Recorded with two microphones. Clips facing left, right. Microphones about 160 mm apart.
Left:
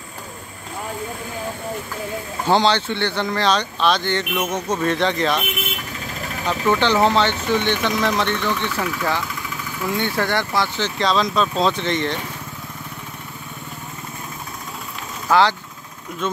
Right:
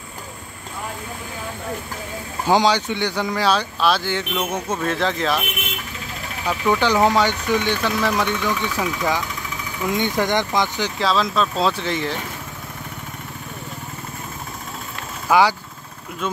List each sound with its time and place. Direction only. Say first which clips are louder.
2.4 s speech: even; 10° right (ahead or behind)
6.4 s speech: even; 10° right (ahead or behind)
11.0 s speech: left 1 dB; 5° right (ahead or behind)
15.2 s speech: even; 10° right (ahead or behind)